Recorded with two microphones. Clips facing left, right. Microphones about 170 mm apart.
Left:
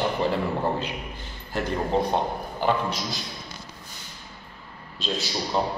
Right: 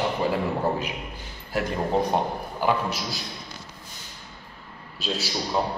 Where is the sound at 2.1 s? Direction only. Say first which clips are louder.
Even; 5° right (ahead or behind).